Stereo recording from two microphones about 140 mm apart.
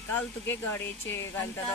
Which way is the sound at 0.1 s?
15° left (ahead or behind).